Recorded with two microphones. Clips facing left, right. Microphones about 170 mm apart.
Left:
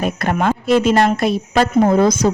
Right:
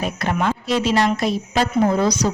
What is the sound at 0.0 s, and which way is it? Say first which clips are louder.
Speech: left 4 dB; 50° left (ahead or behind).